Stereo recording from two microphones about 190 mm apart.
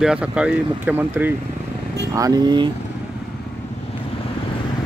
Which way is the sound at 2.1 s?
20° right (ahead or behind).